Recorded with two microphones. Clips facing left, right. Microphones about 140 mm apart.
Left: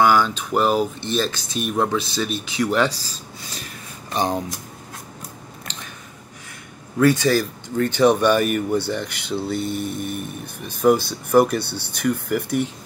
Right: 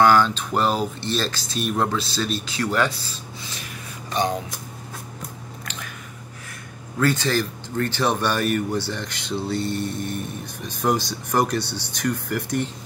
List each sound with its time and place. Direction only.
0.0 s speech: 10° left (ahead or behind)
3.0 s speech: 35° left (ahead or behind)
7.0 s speech: 15° left (ahead or behind)